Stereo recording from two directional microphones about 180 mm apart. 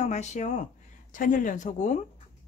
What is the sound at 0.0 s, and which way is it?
Speech, 40° left (ahead or behind).